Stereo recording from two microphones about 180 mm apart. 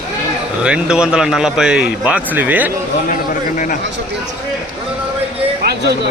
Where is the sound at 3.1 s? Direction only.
45° left (ahead or behind).